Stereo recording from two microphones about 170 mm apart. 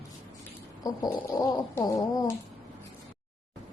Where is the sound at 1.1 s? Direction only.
15° left (ahead or behind).